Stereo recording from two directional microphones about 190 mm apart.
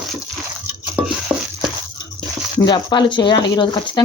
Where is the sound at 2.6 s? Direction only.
20° left (ahead or behind).